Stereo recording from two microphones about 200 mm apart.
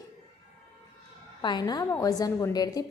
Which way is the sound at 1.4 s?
20° left (ahead or behind).